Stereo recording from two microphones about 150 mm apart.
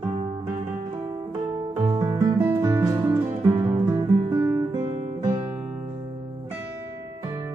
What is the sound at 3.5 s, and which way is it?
Guitar, 25° right (ahead or behind).